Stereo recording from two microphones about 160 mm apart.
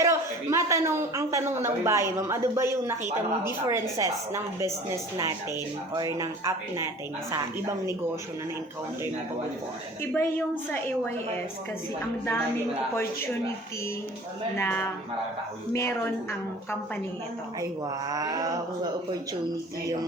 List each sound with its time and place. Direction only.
0.0 s a man's voice: 20° right (ahead or behind)
5.9 s speech: 20° right (ahead or behind)
10.0 s a woman's voice: 15° left (ahead or behind)
14.5 s a woman's voice: 15° left (ahead or behind)
17.6 s speech: 25° right (ahead or behind)